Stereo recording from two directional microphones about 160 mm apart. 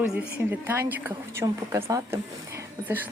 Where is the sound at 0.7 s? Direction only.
10° right (ahead or behind).